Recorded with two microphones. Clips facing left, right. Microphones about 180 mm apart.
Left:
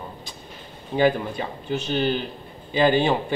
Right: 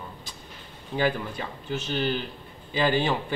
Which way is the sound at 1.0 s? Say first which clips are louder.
Left 6 dB; 25° left (ahead or behind).